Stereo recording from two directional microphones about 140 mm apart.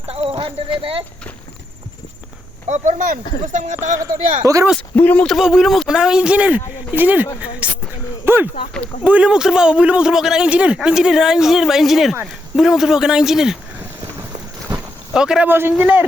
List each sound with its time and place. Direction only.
0.1 s clip-clop: 40° right (ahead or behind)
2.6 s speech: 55° right (ahead or behind)
3.9 s speech: 25° right (ahead or behind)
5.0 s a man's voice: 5° left (ahead or behind); by 7.3 s 10° right (ahead or behind)
7.6 s a sound: 10° right (ahead or behind)
9.0 s a man's voice: 10° right (ahead or behind)
14.7 s a sound: 5° right (ahead or behind)
15.8 s a man's voice: 10° right (ahead or behind)